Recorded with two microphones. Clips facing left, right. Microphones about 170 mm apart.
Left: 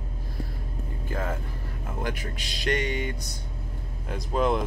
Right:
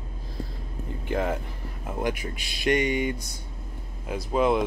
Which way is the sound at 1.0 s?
20° right (ahead or behind).